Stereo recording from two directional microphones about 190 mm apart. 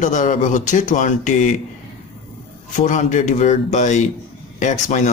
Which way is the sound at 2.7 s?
40° left (ahead or behind).